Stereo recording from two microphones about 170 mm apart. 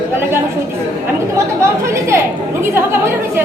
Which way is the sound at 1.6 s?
15° right (ahead or behind).